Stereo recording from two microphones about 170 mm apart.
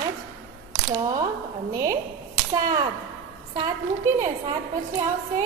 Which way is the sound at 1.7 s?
20° right (ahead or behind).